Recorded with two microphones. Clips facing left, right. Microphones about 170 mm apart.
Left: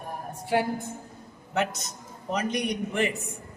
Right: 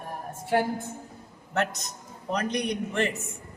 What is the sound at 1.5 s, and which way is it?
A man's voice, centre (ahead or behind).